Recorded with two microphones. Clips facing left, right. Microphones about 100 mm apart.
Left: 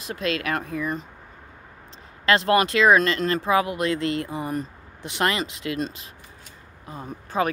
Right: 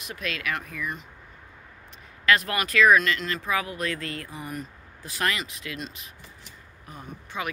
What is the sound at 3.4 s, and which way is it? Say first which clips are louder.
Speech: left 6 dB; 25° left (ahead or behind).